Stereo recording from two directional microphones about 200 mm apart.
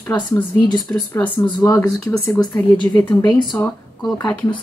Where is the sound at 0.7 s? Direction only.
5° left (ahead or behind).